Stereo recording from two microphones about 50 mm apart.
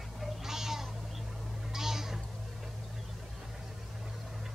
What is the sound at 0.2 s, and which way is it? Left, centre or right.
Cat, centre.